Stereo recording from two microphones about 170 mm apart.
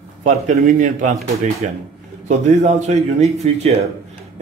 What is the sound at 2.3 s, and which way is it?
A man's voice, 45° right (ahead or behind).